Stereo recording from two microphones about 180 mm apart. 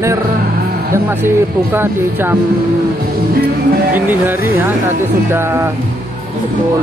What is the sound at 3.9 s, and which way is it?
Speech, 10° right (ahead or behind).